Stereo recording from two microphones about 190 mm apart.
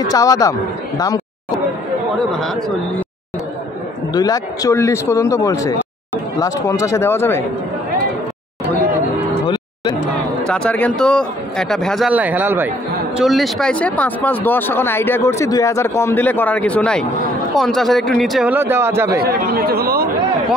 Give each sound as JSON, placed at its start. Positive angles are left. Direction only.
{"t": 0.1, "sound": "speech", "side_deg": 20}
{"t": 4.1, "sound": "speech", "side_deg": 20}
{"t": 10.4, "sound": "speech", "side_deg": 5}
{"t": 12.1, "sound": "speech", "side_deg": -10}
{"t": 19.1, "sound": "speech", "side_deg": -55}